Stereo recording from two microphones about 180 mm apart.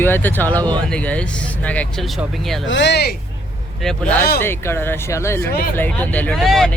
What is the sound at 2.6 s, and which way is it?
Speech, 85° left.